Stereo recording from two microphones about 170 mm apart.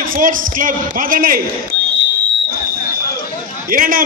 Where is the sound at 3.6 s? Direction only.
55° right (ahead or behind).